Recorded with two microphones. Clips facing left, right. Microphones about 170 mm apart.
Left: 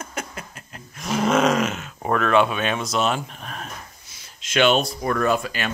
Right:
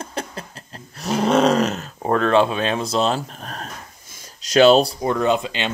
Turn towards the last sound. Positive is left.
turn(degrees=-20)  # may be behind; listen again after turning